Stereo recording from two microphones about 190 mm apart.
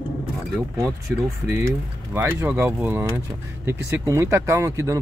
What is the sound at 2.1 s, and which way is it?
Speech, 10° right (ahead or behind).